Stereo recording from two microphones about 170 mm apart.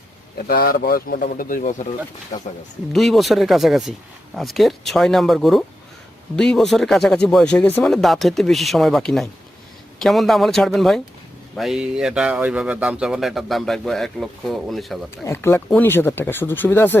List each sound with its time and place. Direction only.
0.4 s speech: 60° left (ahead or behind); by 2.5 s 45° left (ahead or behind)
2.9 s speech: centre (ahead or behind)
15.2 s speech: 15° left (ahead or behind)